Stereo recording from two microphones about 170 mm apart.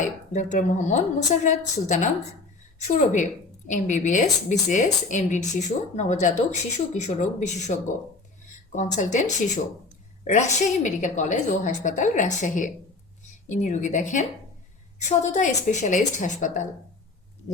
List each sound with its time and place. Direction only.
0.0 s a woman's voice: 45° left (ahead or behind)